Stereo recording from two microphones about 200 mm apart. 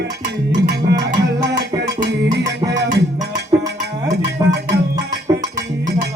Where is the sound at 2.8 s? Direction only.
55° right (ahead or behind).